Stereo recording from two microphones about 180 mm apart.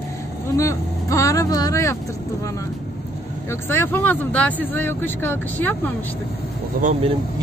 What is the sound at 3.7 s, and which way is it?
Speech, 10° left (ahead or behind).